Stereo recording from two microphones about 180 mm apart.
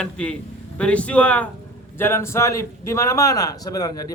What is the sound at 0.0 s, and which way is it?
A man's voice, 5° left (ahead or behind).